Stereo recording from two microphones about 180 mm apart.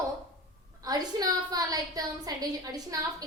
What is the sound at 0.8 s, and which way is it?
A child's voice, 20° right (ahead or behind).